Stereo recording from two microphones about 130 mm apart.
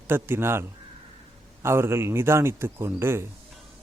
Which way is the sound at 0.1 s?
20° right (ahead or behind).